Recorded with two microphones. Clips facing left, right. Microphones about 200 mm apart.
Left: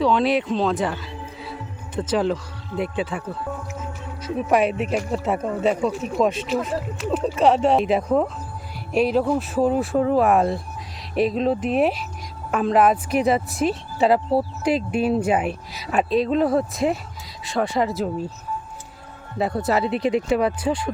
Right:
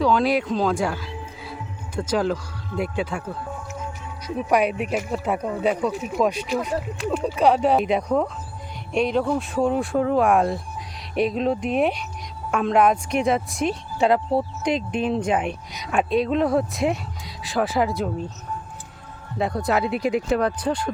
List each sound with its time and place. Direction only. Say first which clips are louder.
0.0 s speech: left 1 dB; centre (ahead or behind)
2.0 s speech: left 1 dB; centre (ahead or behind)
4.4 s speech: left 1 dB; centre (ahead or behind)
19.4 s speech: left 1 dB; 5° left (ahead or behind)